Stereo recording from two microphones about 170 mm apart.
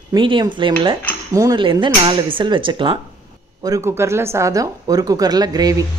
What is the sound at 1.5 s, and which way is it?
A woman's voice, 30° right (ahead or behind).